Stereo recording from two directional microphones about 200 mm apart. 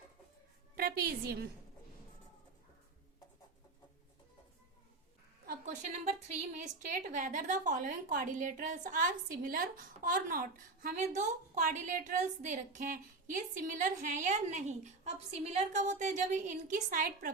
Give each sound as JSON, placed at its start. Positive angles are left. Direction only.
{"t": 0.8, "sound": "a woman's voice", "side_deg": -50}
{"t": 5.5, "sound": "a woman's voice", "side_deg": -40}